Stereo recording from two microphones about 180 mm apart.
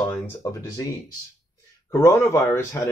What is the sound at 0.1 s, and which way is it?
Speech, 20° left (ahead or behind).